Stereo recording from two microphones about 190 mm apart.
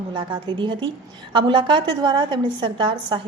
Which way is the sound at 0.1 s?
25° right (ahead or behind).